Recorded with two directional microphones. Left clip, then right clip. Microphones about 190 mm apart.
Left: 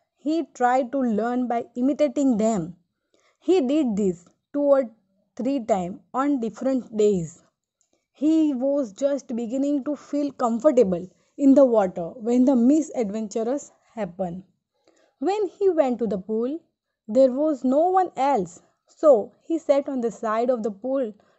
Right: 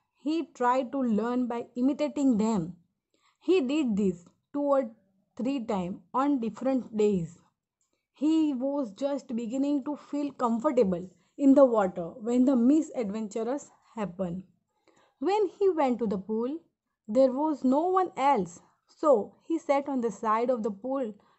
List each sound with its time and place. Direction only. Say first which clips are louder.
0.2 s a woman's voice: left 6 dB; 15° left (ahead or behind)